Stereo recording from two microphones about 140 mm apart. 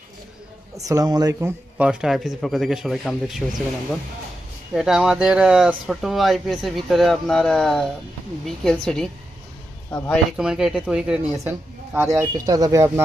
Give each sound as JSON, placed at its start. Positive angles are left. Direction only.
{"t": 0.8, "sound": "speech", "side_deg": -25}
{"t": 1.9, "sound": "speech", "side_deg": -5}
{"t": 4.7, "sound": "speech", "side_deg": -5}
{"t": 10.3, "sound": "speech", "side_deg": -5}
{"t": 11.9, "sound": "speech", "side_deg": -15}